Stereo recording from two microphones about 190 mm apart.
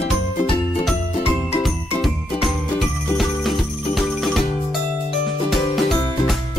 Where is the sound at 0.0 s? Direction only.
30° left (ahead or behind).